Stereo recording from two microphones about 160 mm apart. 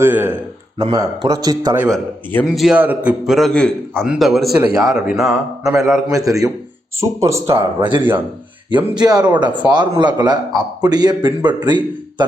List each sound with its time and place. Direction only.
0.0 s speech: 10° right (ahead or behind)
0.8 s a man's voice: 30° right (ahead or behind)
1.7 s a man's voice: 10° right (ahead or behind)
6.1 s a man's voice: 20° right (ahead or behind)
7.5 s a man's voice: 30° right (ahead or behind)